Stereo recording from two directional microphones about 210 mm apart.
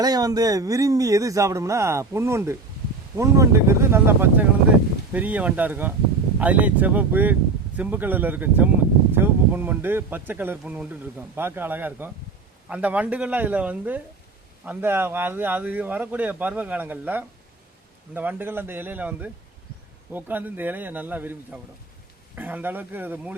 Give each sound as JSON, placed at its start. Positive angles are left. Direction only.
{"t": 0.0, "sound": "speech", "side_deg": -20}